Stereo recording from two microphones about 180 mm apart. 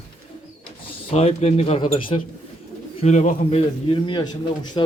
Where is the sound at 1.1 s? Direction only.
35° left (ahead or behind).